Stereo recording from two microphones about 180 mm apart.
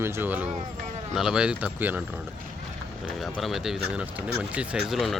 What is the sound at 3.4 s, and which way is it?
Speech, centre (ahead or behind).